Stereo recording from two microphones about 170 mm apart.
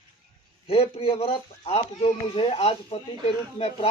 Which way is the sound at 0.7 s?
35° left (ahead or behind).